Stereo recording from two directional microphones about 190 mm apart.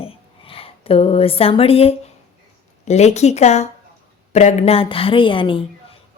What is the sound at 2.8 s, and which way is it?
Speech, 35° left (ahead or behind).